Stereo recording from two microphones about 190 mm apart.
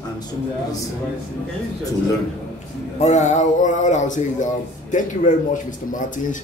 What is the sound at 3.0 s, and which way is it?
Speech, 35° left (ahead or behind).